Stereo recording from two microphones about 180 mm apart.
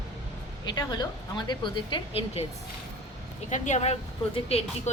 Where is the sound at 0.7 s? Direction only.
20° left (ahead or behind).